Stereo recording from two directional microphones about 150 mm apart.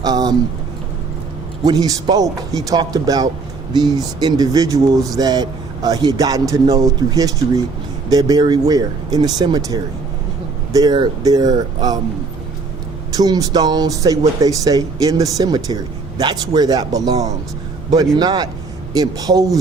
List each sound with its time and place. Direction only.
0.0 s speech: 25° right (ahead or behind)
1.6 s speech: 25° right (ahead or behind)
13.1 s speech: 25° right (ahead or behind)